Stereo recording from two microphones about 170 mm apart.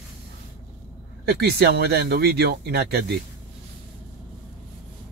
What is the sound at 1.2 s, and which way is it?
Speech, 75° right (ahead or behind).